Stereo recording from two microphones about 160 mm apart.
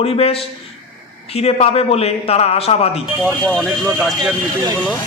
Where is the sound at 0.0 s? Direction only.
40° left (ahead or behind).